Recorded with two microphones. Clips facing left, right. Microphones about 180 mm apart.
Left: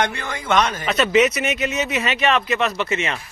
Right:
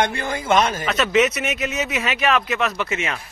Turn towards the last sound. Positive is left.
turn(degrees=0)  # may be behind; listen again after turning